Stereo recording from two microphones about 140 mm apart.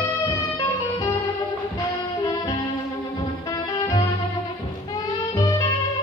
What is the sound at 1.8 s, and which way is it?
Music, 25° left (ahead or behind).